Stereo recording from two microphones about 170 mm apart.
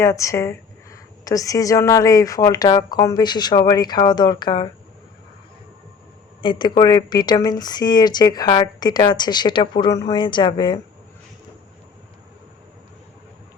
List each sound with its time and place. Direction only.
0.0 s speech: 15° left (ahead or behind)
6.4 s speech: 25° left (ahead or behind)